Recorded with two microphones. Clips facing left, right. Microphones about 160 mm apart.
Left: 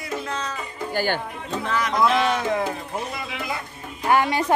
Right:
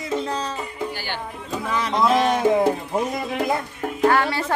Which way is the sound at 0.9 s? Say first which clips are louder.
Left 7 dB; 45° left (ahead or behind).